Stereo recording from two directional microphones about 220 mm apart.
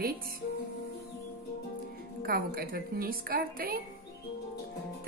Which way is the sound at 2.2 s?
40° right (ahead or behind).